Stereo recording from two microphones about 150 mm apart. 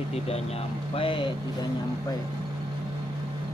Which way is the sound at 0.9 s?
35° left (ahead or behind).